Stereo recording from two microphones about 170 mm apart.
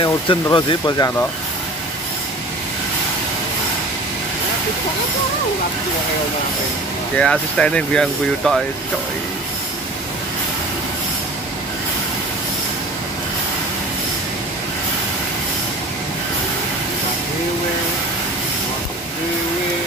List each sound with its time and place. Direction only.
0.0 s speech: 25° left (ahead or behind)
7.2 s speech: 5° left (ahead or behind)